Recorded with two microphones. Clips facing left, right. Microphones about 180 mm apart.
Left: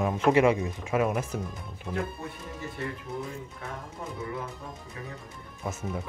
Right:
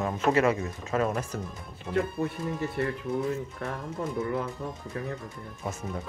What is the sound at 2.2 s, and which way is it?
Speech, 65° right (ahead or behind).